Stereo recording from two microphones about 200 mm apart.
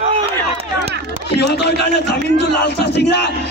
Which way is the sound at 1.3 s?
55° left (ahead or behind).